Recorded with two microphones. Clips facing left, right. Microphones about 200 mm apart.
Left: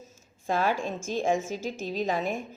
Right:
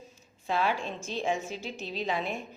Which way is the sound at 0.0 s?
45° left (ahead or behind).